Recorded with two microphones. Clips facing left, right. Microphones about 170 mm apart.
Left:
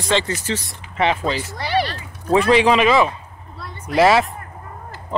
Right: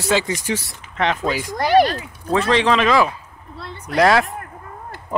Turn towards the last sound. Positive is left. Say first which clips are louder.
# left 1 dB
turn(degrees=5)  # may be behind; listen again after turning